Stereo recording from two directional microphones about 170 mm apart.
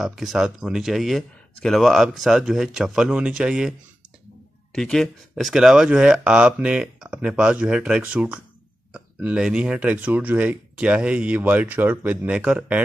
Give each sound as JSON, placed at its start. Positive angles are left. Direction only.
{"t": 0.0, "sound": "speech", "side_deg": 0}
{"t": 4.7, "sound": "speech", "side_deg": 5}